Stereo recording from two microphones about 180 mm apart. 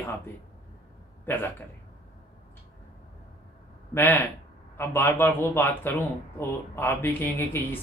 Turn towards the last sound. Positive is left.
turn(degrees=10)  # may be behind; listen again after turning